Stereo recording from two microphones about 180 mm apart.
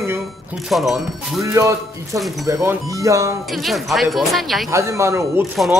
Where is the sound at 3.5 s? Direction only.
Centre (ahead or behind).